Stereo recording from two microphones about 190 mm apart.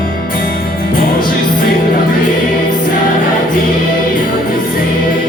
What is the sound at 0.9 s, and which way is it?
Music, 50° left (ahead or behind).